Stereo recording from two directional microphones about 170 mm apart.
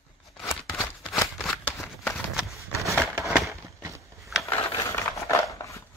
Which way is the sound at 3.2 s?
5° right (ahead or behind).